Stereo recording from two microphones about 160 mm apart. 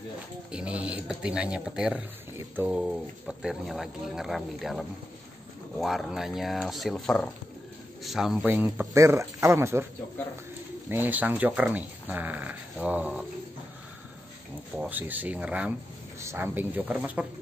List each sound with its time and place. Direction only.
0.5 s speech: 5° right (ahead or behind)
10.9 s speech: 10° right (ahead or behind)
14.8 s speech: 10° right (ahead or behind)